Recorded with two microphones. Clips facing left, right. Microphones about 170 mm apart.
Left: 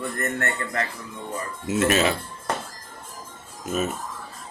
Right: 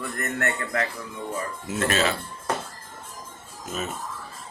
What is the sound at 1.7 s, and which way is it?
Mantra, 20° left (ahead or behind).